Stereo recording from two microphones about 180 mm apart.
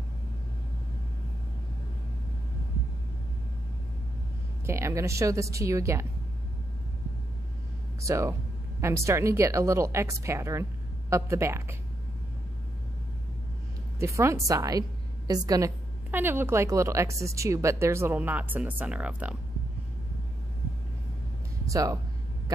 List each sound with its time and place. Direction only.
4.6 s a woman's voice: 15° right (ahead or behind)
8.0 s a woman's voice: 15° right (ahead or behind)
13.9 s a woman's voice: 15° right (ahead or behind)
21.6 s speech: 20° right (ahead or behind)